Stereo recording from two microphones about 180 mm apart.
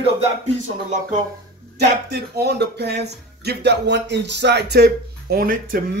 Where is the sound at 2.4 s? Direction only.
65° right (ahead or behind).